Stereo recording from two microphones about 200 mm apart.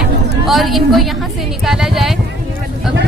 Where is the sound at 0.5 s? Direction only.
Centre (ahead or behind).